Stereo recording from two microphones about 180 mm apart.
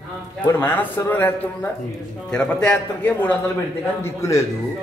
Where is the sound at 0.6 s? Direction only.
10° left (ahead or behind).